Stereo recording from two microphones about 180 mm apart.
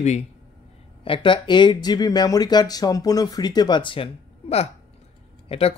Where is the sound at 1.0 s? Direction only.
30° left (ahead or behind).